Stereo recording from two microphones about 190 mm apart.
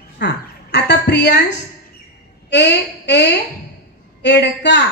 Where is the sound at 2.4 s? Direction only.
65° left (ahead or behind).